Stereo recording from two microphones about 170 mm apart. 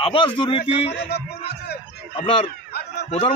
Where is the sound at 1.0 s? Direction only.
75° left (ahead or behind).